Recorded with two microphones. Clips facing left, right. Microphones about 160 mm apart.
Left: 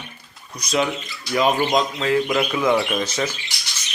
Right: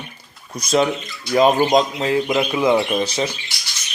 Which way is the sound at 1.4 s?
35° right (ahead or behind).